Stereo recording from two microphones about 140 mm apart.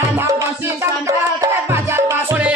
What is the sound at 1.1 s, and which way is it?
Music, 20° right (ahead or behind).